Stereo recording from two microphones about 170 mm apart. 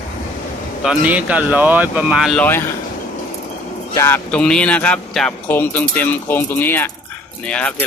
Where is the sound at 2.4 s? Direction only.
15° left (ahead or behind).